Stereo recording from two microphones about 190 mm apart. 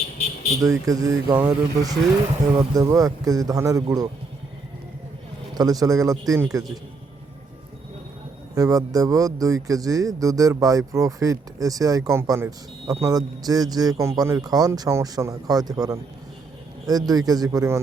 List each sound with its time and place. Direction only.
0.6 s speech: 15° right (ahead or behind)
5.5 s speech: 20° right (ahead or behind)
8.5 s speech: 20° right (ahead or behind)